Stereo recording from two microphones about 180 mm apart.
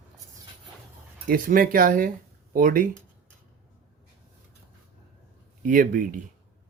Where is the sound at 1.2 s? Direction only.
50° right (ahead or behind).